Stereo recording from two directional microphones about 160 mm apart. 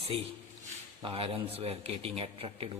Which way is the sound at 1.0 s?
35° right (ahead or behind).